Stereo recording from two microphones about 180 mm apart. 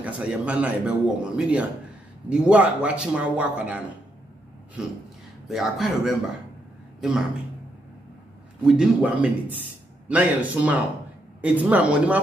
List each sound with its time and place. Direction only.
0.0 s a man's voice: 5° right (ahead or behind)
8.6 s a man's voice: 5° right (ahead or behind)